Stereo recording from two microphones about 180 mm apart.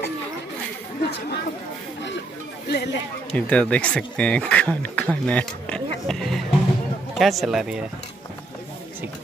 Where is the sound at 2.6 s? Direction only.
65° left (ahead or behind).